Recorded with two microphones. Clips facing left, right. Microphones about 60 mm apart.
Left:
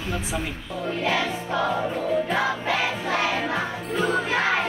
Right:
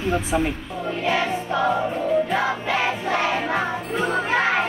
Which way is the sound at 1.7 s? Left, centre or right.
Centre.